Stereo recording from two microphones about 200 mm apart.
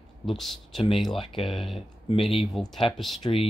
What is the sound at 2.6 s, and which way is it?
Speech, centre (ahead or behind).